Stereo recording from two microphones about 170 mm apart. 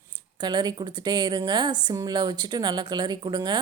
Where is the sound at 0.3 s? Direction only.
25° right (ahead or behind).